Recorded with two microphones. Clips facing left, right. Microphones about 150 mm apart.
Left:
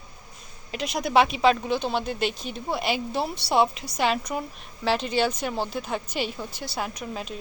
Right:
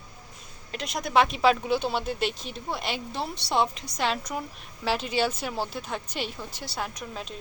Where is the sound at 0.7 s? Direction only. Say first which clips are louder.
Left 3 dB; centre (ahead or behind).